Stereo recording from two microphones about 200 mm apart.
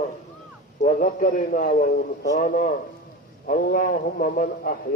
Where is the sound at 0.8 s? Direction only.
40° left (ahead or behind).